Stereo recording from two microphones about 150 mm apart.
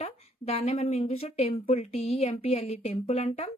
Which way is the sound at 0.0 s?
45° left (ahead or behind).